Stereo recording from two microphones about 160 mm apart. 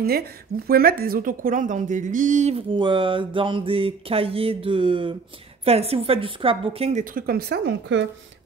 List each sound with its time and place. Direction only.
0.7 s a woman's voice: 70° right (ahead or behind); by 2.6 s 45° right (ahead or behind)
2.7 s a sound: 30° right (ahead or behind)
7.2 s speech: 70° right (ahead or behind); by 8.0 s 90° right